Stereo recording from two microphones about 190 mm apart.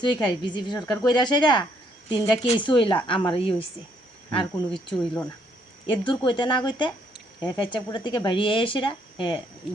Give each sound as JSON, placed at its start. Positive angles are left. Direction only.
{"t": 0.0, "sound": "speech", "side_deg": 25}
{"t": 9.7, "sound": "speech", "side_deg": 0}